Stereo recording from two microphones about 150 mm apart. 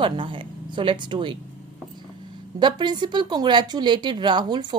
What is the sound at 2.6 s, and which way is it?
Speech, 30° right (ahead or behind).